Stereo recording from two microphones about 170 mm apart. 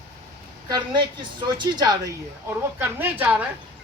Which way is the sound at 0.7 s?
25° right (ahead or behind).